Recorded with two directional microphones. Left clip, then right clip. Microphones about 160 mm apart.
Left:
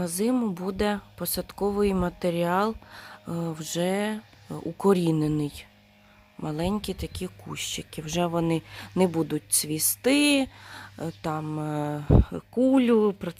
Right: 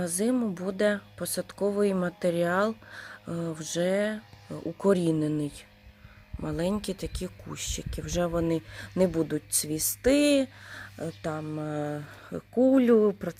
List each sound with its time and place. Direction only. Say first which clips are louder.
0.0 s speech: left 2 dB; 15° left (ahead or behind)
6.4 s speech: left 1 dB; 10° left (ahead or behind)